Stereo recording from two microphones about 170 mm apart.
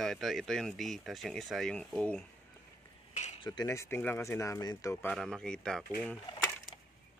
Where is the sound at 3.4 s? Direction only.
20° left (ahead or behind).